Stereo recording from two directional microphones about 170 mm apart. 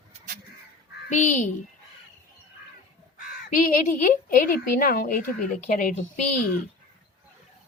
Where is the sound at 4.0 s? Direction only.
55° left (ahead or behind).